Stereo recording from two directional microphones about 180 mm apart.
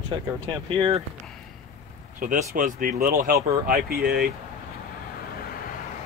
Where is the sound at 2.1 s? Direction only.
50° right (ahead or behind).